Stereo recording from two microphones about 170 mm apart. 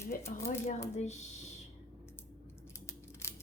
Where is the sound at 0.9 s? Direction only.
40° left (ahead or behind).